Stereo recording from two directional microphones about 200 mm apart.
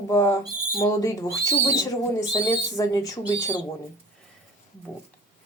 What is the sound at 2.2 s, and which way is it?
Speech, 20° left (ahead or behind).